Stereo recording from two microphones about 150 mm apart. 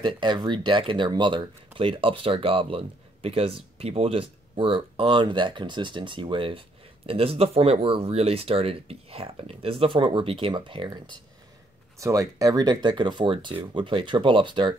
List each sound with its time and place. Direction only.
0.0 s speech: 30° right (ahead or behind)
12.0 s speech: 20° right (ahead or behind)